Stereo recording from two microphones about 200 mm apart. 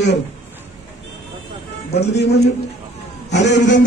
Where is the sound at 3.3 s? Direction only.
60° left (ahead or behind).